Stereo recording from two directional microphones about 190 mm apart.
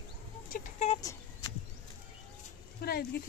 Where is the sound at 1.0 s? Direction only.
20° left (ahead or behind).